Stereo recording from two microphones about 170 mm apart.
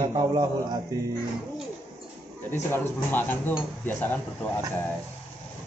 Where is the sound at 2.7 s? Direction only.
10° left (ahead or behind).